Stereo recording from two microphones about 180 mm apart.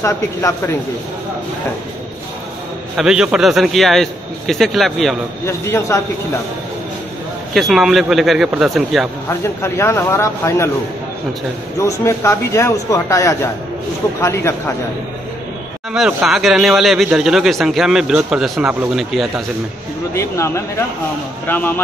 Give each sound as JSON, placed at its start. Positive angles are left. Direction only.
{"t": 0.0, "sound": "speech", "side_deg": 15}
{"t": 3.0, "sound": "speech", "side_deg": -5}
{"t": 5.4, "sound": "speech", "side_deg": 15}
{"t": 7.5, "sound": "speech", "side_deg": 0}
{"t": 9.3, "sound": "speech", "side_deg": 15}
{"t": 11.8, "sound": "speech", "side_deg": 15}
{"t": 15.9, "sound": "speech", "side_deg": -5}
{"t": 20.2, "sound": "speech", "side_deg": 15}